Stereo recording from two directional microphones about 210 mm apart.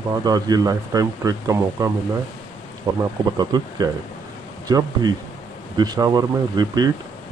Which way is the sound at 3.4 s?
20° right (ahead or behind).